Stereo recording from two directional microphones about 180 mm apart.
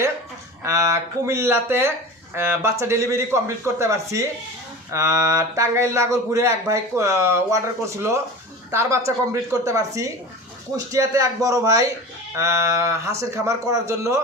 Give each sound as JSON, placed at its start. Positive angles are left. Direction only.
{"t": 0.6, "sound": "speech", "side_deg": -15}
{"t": 8.7, "sound": "speech", "side_deg": -15}